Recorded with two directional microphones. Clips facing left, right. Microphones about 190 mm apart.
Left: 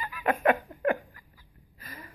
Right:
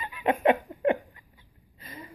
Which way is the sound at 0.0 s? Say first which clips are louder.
Right 2 dB; 25° right (ahead or behind).